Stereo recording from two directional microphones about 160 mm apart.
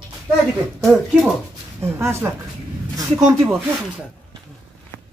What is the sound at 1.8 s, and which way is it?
Speech, 15° right (ahead or behind).